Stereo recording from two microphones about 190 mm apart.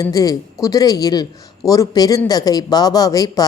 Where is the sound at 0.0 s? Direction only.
20° left (ahead or behind).